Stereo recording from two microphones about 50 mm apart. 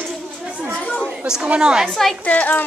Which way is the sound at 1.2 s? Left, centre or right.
Centre.